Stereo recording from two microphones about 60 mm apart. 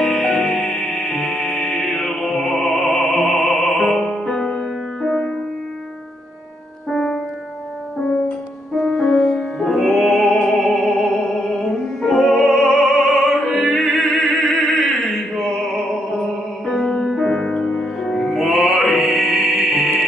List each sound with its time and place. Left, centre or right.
0.0 s music: centre
4.1 s music: centre
6.9 s music: centre
8.8 s music: centre
9.7 s music: centre
14.2 s opera: centre
16.6 s music: centre